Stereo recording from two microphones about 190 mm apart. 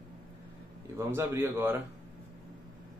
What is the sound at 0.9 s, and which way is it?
Speech, 15° right (ahead or behind).